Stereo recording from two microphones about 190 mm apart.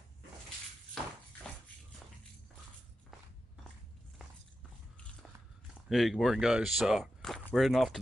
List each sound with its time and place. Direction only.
5.9 s speech: centre (ahead or behind)